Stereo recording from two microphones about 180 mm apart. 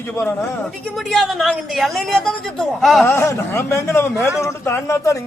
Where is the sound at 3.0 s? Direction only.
15° left (ahead or behind).